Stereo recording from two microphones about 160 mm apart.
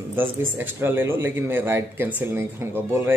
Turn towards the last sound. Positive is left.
turn(degrees=-15)  # may be behind; listen again after turning